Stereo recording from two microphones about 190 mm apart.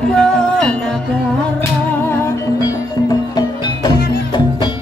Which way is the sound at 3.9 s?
55° left (ahead or behind).